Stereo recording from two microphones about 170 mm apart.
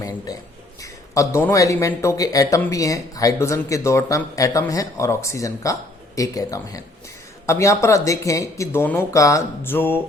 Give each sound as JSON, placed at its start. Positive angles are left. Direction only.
{"t": 0.8, "sound": "speech", "side_deg": 20}